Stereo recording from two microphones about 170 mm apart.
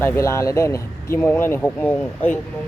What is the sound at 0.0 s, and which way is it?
Speech, 15° left (ahead or behind).